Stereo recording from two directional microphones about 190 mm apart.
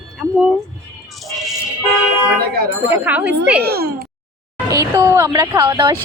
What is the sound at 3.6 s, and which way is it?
Speech, 55° right (ahead or behind).